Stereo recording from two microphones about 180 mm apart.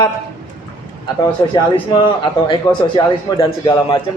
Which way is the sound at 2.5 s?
25° left (ahead or behind).